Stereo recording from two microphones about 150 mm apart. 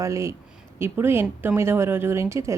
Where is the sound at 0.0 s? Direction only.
20° right (ahead or behind).